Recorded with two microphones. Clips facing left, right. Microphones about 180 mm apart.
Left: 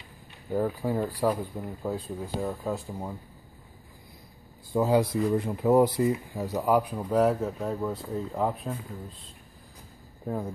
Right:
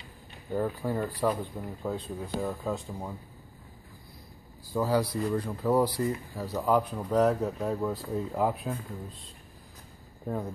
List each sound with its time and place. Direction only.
0.5 s speech: 10° left (ahead or behind)
4.7 s speech: 20° left (ahead or behind); by 8.7 s 5° right (ahead or behind)
10.2 s speech: 5° left (ahead or behind)